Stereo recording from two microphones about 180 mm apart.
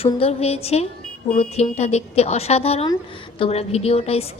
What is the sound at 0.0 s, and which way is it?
A woman's voice, 35° left (ahead or behind).